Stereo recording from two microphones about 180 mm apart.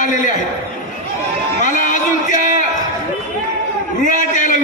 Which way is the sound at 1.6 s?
45° left (ahead or behind).